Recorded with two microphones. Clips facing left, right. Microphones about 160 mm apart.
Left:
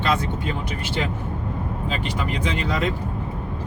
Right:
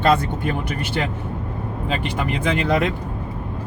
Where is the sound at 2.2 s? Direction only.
55° right (ahead or behind).